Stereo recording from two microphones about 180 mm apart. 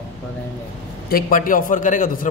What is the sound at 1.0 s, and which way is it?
A man's voice, 50° left (ahead or behind).